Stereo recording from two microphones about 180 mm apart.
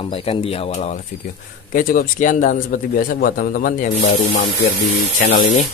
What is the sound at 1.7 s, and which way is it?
Speech, 50° left (ahead or behind).